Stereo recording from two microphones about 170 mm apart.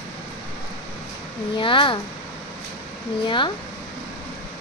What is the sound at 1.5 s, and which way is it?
Speech, 30° left (ahead or behind).